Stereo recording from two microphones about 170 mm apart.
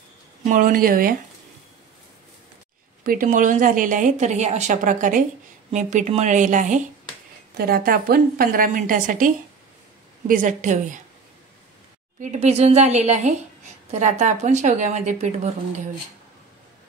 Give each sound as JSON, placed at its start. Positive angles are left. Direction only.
{"t": 0.4, "sound": "a woman's voice", "side_deg": -55}
{"t": 3.0, "sound": "a woman's voice", "side_deg": -55}
{"t": 7.5, "sound": "a woman's voice", "side_deg": -60}
{"t": 12.2, "sound": "a woman's voice", "side_deg": -40}